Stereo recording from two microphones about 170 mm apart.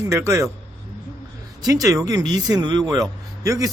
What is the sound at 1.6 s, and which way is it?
A man's voice, 20° right (ahead or behind).